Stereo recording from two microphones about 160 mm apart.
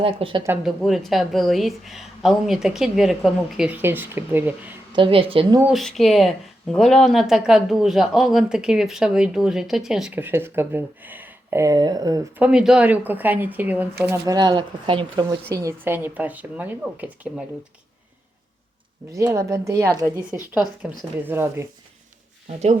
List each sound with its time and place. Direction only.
0.0 s a woman's voice: 35° right (ahead or behind)
0.6 s a woman's voice: centre (ahead or behind)
4.9 s a woman's voice: 30° right (ahead or behind)
5.7 s a woman's voice: centre (ahead or behind); by 12.2 s 25° right (ahead or behind)
12.4 s speech: 5° right (ahead or behind)
14.3 s speech: 30° right (ahead or behind)
15.5 s speech: 15° right (ahead or behind)
19.2 s speech: 20° right (ahead or behind)